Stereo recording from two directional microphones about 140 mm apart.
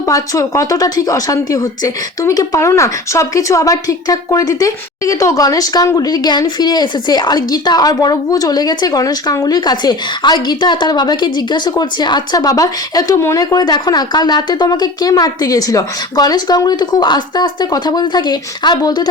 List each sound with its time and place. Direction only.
0.1 s speech: 25° left (ahead or behind)